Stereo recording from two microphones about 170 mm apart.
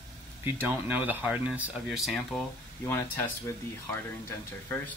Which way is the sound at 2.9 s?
15° left (ahead or behind).